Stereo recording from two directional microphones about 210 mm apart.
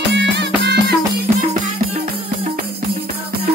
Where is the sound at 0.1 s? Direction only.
55° right (ahead or behind).